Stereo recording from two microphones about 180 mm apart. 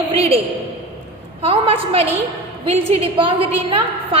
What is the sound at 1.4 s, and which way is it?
A woman's voice, 30° right (ahead or behind).